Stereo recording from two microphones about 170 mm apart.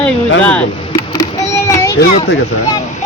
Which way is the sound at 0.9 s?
20° left (ahead or behind).